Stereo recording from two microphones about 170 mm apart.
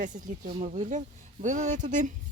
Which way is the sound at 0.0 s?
50° right (ahead or behind).